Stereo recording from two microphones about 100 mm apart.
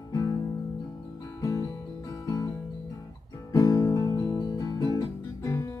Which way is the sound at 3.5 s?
35° left (ahead or behind).